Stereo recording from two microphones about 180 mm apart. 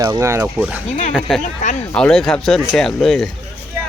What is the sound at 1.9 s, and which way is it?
Speech, 5° left (ahead or behind).